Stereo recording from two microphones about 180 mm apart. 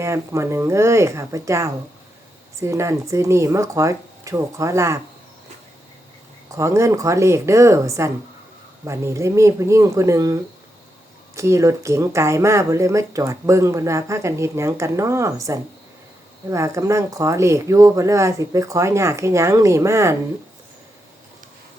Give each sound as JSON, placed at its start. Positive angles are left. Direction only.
{"t": 0.0, "sound": "speech", "side_deg": -15}
{"t": 6.5, "sound": "speech", "side_deg": -15}